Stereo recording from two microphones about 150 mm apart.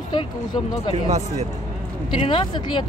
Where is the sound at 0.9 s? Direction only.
50° right (ahead or behind).